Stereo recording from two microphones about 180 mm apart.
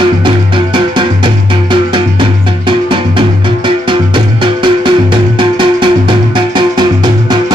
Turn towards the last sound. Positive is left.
turn(degrees=-25)  # may be behind; listen again after turning